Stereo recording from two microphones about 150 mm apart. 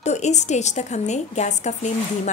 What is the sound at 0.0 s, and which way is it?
A woman's voice, 50° left (ahead or behind).